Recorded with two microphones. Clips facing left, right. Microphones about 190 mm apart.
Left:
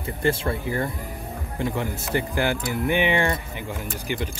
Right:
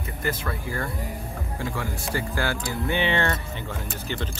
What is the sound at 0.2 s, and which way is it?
Speech, 30° left (ahead or behind).